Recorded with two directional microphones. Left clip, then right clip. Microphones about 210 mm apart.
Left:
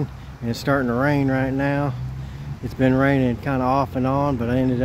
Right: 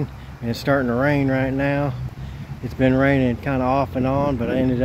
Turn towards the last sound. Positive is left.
turn(degrees=5)  # may be behind; listen again after turning